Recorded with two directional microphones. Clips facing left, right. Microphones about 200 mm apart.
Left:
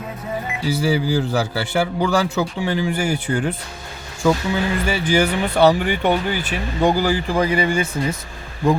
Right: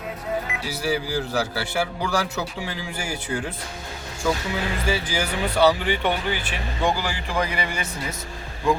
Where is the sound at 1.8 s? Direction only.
55° left (ahead or behind).